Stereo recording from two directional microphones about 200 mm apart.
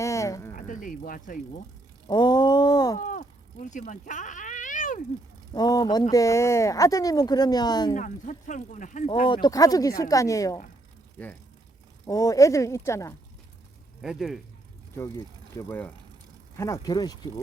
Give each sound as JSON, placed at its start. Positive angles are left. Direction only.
{"t": 0.0, "sound": "a sound", "side_deg": 15}
{"t": 0.5, "sound": "speech", "side_deg": 40}
{"t": 2.0, "sound": "a sound", "side_deg": 20}
{"t": 3.0, "sound": "a sound", "side_deg": 40}
{"t": 5.5, "sound": "speech", "side_deg": 20}
{"t": 7.9, "sound": "speech", "side_deg": 40}
{"t": 9.2, "sound": "speech", "side_deg": 25}
{"t": 12.0, "sound": "speech", "side_deg": 15}
{"t": 14.0, "sound": "speech", "side_deg": 0}
{"t": 14.9, "sound": "speech", "side_deg": 15}